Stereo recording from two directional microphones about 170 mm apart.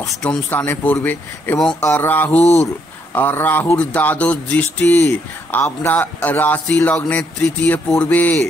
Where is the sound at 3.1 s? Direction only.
10° left (ahead or behind).